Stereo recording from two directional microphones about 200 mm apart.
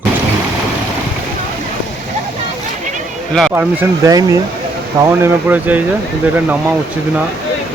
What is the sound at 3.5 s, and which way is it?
Speech, 15° right (ahead or behind).